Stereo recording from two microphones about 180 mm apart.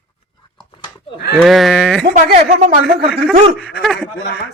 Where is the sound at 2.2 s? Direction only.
45° right (ahead or behind).